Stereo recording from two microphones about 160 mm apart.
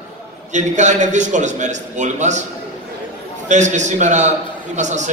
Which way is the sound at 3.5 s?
50° right (ahead or behind).